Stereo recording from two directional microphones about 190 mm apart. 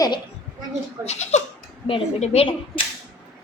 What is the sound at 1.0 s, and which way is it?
A woman's voice, 35° left (ahead or behind).